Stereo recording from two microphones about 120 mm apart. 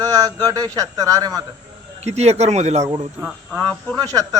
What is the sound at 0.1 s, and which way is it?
A man's voice, 30° right (ahead or behind).